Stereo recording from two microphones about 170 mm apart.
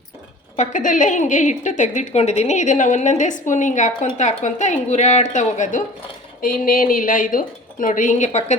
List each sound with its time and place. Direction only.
0.5 s a woman's voice: 45° left (ahead or behind)